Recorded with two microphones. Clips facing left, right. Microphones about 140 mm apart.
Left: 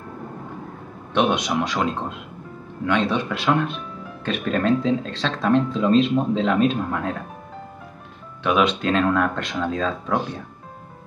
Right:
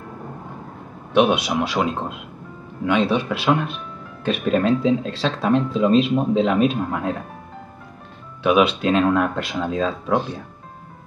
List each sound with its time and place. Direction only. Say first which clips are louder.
1.1 s speech: right 3 dB; 5° right (ahead or behind)
8.5 s speech: right 3 dB; 10° right (ahead or behind)